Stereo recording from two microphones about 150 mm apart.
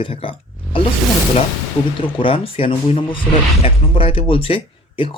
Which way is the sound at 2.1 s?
35° left (ahead or behind).